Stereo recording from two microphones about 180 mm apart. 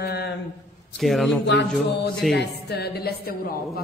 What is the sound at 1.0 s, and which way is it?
Speech, centre (ahead or behind).